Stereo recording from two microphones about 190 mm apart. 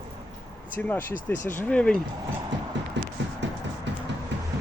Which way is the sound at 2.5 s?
70° right (ahead or behind).